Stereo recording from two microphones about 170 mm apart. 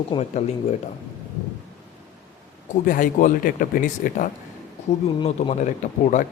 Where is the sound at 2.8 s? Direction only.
50° left (ahead or behind).